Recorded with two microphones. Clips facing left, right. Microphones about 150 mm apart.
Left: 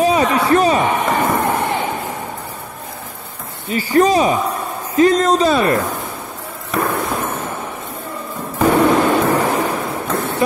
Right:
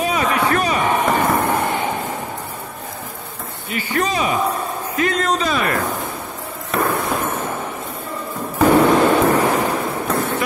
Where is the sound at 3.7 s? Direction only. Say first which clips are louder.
Left 8 dB; 35° left (ahead or behind).